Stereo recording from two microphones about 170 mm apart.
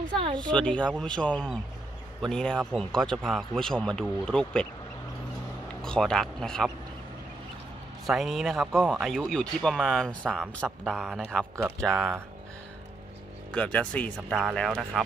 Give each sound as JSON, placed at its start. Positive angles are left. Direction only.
{"t": 0.2, "sound": "speech", "side_deg": -30}
{"t": 0.6, "sound": "speech", "side_deg": 5}
{"t": 5.8, "sound": "speech", "side_deg": 5}
{"t": 8.1, "sound": "speech", "side_deg": 0}
{"t": 13.5, "sound": "speech", "side_deg": 10}